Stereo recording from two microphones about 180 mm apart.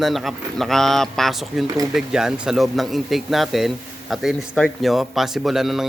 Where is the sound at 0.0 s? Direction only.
Centre (ahead or behind).